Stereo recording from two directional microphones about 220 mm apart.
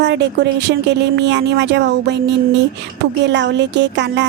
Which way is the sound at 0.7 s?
50° right (ahead or behind).